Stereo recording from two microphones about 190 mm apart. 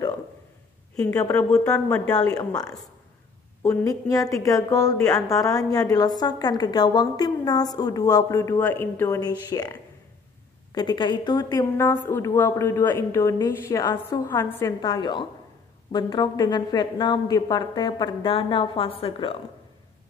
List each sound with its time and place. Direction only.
0.9 s a woman's voice: 15° left (ahead or behind)
2.1 s a woman's voice: 20° left (ahead or behind)
14.8 s speech: 25° left (ahead or behind)